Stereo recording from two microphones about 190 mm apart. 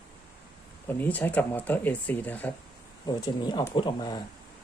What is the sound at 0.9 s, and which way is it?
Speech, 10° left (ahead or behind).